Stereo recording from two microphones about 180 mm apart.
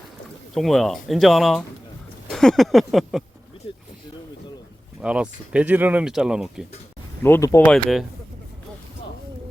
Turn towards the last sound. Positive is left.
turn(degrees=10)  # may be behind; listen again after turning